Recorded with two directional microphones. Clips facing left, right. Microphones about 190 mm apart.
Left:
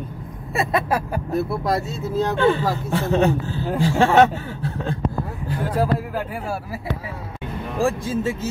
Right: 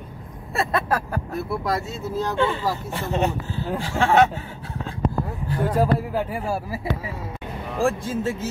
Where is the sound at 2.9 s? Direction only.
90° left.